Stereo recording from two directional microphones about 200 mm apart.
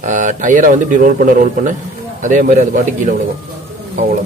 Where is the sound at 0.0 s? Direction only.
40° right (ahead or behind).